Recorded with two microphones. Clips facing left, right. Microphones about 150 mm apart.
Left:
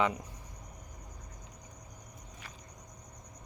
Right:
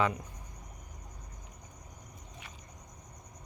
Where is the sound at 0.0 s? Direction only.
25° left (ahead or behind).